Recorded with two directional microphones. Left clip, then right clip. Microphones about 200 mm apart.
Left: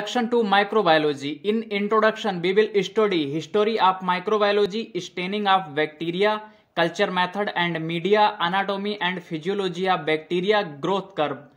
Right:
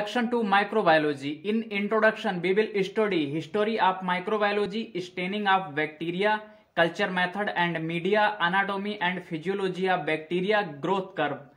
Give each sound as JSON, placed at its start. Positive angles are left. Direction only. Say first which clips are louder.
{"t": 0.1, "sound": "speech", "louder": "left 5 dB", "side_deg": 30}